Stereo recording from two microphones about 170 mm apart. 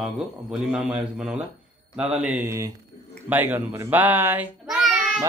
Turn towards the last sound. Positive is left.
turn(degrees=0)  # may be behind; listen again after turning